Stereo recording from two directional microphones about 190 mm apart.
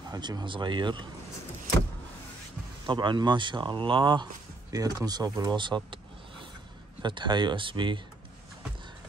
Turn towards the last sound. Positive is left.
turn(degrees=-25)  # may be behind; listen again after turning